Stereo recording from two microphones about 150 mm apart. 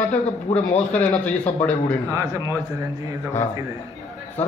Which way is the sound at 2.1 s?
20° right (ahead or behind).